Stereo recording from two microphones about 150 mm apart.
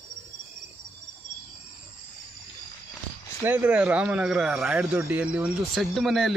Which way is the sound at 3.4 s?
10° right (ahead or behind).